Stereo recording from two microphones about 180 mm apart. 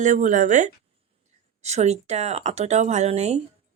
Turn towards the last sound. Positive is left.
turn(degrees=-35)  # may be behind; listen again after turning